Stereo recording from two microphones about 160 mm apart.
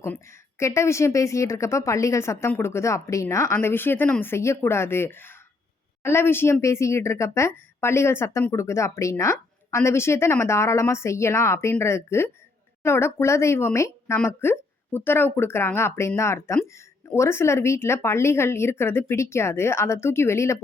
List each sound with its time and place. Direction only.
0.0 s a woman's voice: 15° left (ahead or behind)